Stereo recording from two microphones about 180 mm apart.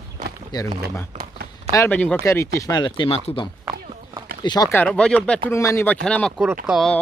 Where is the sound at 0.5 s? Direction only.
20° left (ahead or behind).